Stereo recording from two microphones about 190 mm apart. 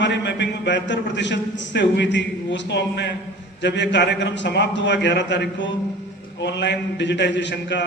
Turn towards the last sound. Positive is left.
turn(degrees=65)  # may be behind; listen again after turning